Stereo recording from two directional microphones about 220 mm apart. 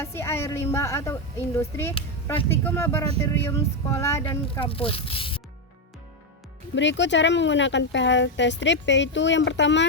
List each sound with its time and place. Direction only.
0.0 s a woman's voice: 10° left (ahead or behind)
6.7 s speech: 55° left (ahead or behind)